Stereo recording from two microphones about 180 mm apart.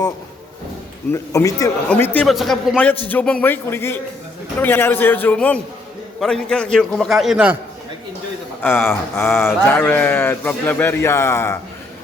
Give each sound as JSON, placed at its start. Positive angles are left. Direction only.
{"t": 1.1, "sound": "a man's voice", "side_deg": 15}
{"t": 1.9, "sound": "a man's voice", "side_deg": 10}
{"t": 8.6, "sound": "a man's voice", "side_deg": 15}